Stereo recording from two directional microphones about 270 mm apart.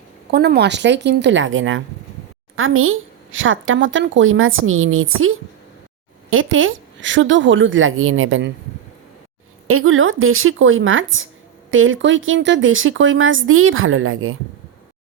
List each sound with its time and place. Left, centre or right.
0.3 s a woman's voice: right
9.6 s a woman's voice: right